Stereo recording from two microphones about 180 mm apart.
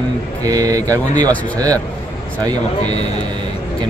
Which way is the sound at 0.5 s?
20° right (ahead or behind).